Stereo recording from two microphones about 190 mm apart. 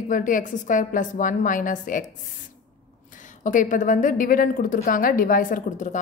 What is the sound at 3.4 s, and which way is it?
A woman's voice, 40° left (ahead or behind).